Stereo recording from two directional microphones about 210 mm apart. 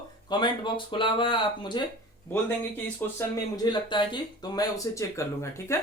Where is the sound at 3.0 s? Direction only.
10° left (ahead or behind).